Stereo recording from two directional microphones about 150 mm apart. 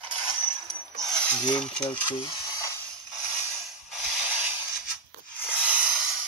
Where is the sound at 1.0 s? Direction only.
5° left (ahead or behind).